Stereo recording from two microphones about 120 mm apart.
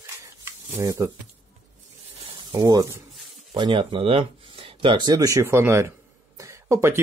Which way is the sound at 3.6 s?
45° right (ahead or behind).